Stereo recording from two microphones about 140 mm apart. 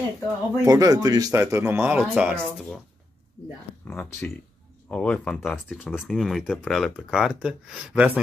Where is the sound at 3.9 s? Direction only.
10° left (ahead or behind).